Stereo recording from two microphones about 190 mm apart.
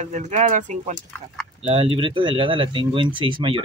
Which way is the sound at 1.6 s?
30° right (ahead or behind).